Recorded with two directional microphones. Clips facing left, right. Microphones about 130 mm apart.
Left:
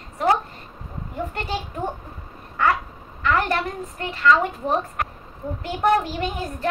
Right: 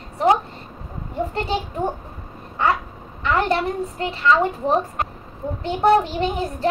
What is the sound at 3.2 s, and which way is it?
A woman's voice, 25° right (ahead or behind).